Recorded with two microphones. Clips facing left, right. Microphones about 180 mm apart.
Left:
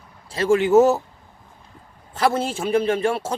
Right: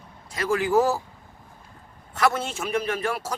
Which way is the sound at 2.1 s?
30° left (ahead or behind).